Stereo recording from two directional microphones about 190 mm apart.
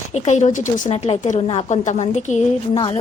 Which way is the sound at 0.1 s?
35° left (ahead or behind).